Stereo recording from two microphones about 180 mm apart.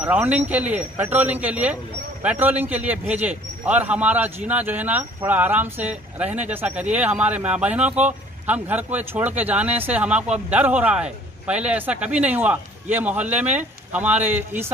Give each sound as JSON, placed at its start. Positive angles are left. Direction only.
{"t": 0.0, "sound": "speech", "side_deg": -10}